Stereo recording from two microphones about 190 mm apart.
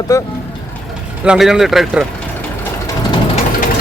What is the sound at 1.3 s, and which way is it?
Speech, 5° right (ahead or behind).